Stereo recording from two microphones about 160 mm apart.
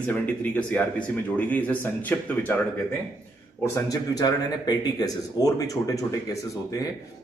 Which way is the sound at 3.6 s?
25° left (ahead or behind).